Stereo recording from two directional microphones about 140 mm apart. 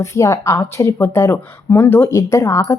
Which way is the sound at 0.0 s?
20° left (ahead or behind).